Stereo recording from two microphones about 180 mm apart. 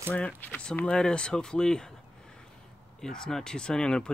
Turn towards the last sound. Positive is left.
turn(degrees=5)  # may be behind; listen again after turning